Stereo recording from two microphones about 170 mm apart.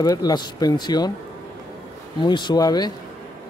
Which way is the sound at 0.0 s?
20° left (ahead or behind).